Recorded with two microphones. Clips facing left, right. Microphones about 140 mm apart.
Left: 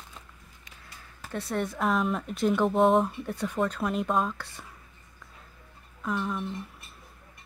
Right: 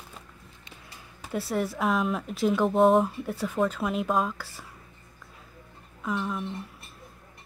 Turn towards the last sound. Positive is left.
turn(degrees=0)  # may be behind; listen again after turning